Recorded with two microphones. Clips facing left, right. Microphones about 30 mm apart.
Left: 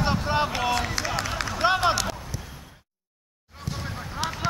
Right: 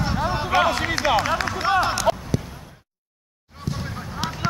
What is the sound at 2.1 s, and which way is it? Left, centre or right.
Basketball bounce, right.